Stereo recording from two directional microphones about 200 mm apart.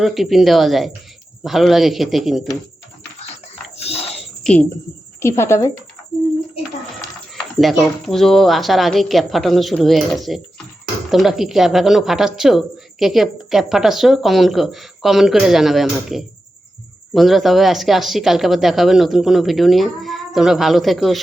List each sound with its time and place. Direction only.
0.0 s a woman's voice: centre (ahead or behind)
3.8 s a sound: 30° left (ahead or behind)
4.4 s a woman's voice: 5° left (ahead or behind)
5.2 s a woman's voice: 15° left (ahead or behind)
7.6 s a woman's voice: centre (ahead or behind)